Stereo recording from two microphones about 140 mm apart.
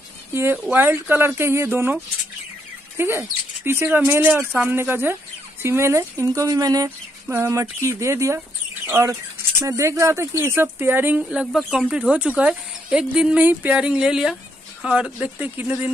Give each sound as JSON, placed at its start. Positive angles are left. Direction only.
{"t": 0.3, "sound": "speech", "side_deg": -15}
{"t": 3.0, "sound": "speech", "side_deg": -20}